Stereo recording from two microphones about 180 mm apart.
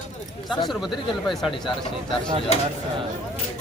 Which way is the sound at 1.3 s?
Centre (ahead or behind).